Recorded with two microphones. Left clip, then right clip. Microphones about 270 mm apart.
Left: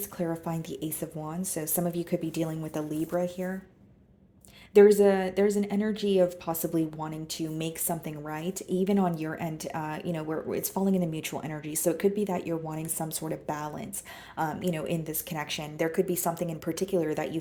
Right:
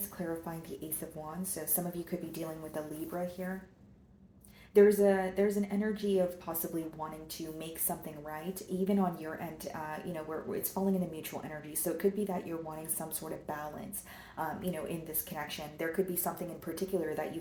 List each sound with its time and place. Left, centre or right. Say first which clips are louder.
0.2 s a woman's voice: left 7 dB; left
4.7 s a woman's voice: left 6 dB; left